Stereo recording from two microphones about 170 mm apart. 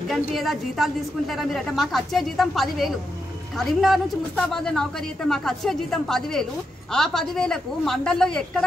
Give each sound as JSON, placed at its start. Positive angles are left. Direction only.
{"t": 0.1, "sound": "a woman's voice", "side_deg": 0}